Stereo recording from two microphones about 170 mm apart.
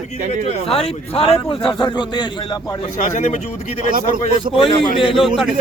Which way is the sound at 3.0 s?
45° left (ahead or behind).